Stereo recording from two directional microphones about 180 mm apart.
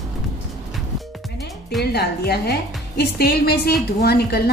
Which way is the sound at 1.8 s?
65° left (ahead or behind).